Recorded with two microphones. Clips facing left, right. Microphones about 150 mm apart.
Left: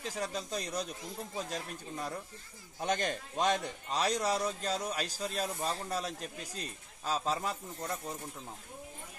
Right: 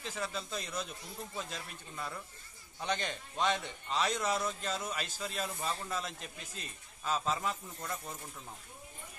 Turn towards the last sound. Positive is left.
turn(degrees=35)  # may be behind; listen again after turning